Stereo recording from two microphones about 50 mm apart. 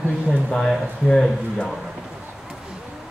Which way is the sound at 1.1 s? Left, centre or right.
Centre.